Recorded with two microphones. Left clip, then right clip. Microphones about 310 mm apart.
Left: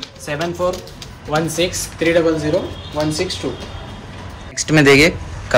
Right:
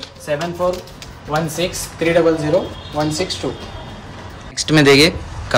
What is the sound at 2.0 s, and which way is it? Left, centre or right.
Speech, right.